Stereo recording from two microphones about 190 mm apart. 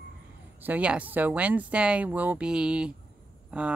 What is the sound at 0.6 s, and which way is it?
Speech, 5° right (ahead or behind).